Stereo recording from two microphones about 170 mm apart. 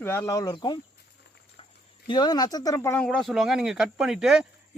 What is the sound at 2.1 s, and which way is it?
Speech, 25° left (ahead or behind).